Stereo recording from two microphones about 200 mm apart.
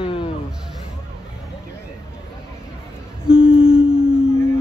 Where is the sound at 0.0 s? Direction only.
25° left (ahead or behind).